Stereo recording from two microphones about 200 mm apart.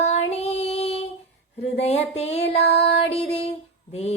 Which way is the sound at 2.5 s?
60° left (ahead or behind).